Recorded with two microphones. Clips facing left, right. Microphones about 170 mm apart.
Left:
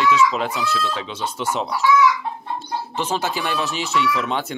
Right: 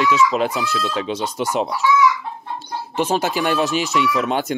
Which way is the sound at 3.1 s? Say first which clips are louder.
Right 4 dB; 45° right (ahead or behind).